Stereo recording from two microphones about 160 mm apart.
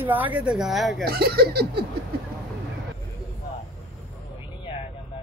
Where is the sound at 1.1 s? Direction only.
75° right (ahead or behind).